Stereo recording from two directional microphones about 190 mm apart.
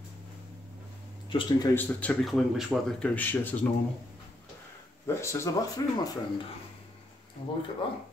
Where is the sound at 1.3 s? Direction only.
25° left (ahead or behind).